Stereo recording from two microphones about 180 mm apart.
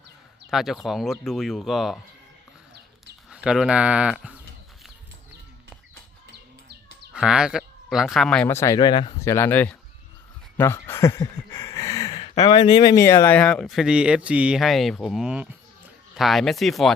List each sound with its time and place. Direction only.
0.5 s speech: centre (ahead or behind)
3.2 s speech: 5° right (ahead or behind)
7.1 s speech: 5° right (ahead or behind)
10.6 s a sound: 15° left (ahead or behind)
12.4 s speech: 25° left (ahead or behind); by 16.9 s centre (ahead or behind)